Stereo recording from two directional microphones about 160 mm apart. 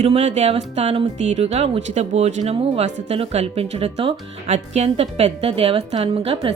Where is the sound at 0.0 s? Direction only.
40° right (ahead or behind).